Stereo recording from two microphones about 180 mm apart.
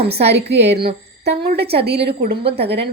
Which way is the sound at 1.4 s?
60° right (ahead or behind).